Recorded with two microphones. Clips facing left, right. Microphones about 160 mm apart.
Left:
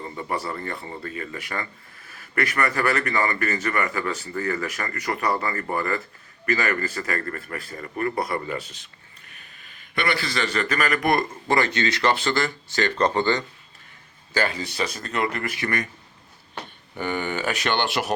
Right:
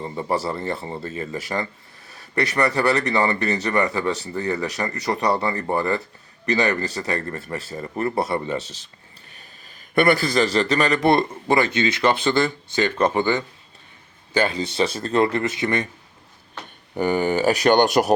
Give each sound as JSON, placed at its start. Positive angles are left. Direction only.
{"t": 0.0, "sound": "speech", "side_deg": -30}
{"t": 9.3, "sound": "sniff", "side_deg": -35}
{"t": 9.9, "sound": "speech", "side_deg": -50}
{"t": 11.4, "sound": "speech", "side_deg": -15}
{"t": 14.3, "sound": "speech", "side_deg": -25}
{"t": 16.9, "sound": "speech", "side_deg": -40}